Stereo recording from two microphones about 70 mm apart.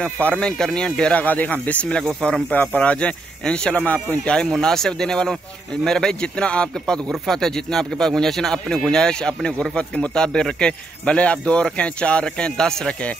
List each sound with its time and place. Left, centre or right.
0.0 s speech: centre
1.2 s speech: left